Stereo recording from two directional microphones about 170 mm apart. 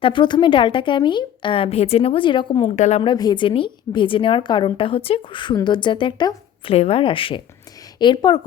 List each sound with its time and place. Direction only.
0.0 s a woman's voice: 30° left (ahead or behind)
2.7 s a woman's voice: 45° left (ahead or behind)
3.0 s a woman's voice: 25° left (ahead or behind)